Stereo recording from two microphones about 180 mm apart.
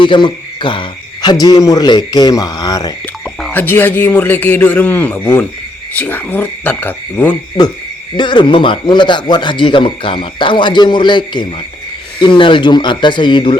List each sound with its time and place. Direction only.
0.0 s speech: 25° left (ahead or behind)
3.5 s a man's voice: 10° left (ahead or behind)
8.1 s speech: 25° left (ahead or behind)